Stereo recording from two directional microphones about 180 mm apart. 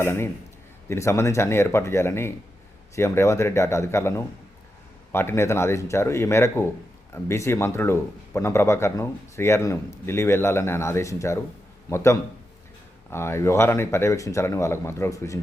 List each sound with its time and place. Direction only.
0.0 s speech: 15° left (ahead or behind)